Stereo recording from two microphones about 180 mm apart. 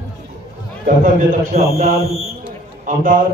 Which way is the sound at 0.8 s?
45° right (ahead or behind).